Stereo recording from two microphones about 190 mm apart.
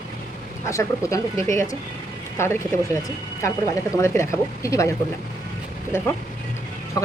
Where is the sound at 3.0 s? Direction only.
15° left (ahead or behind).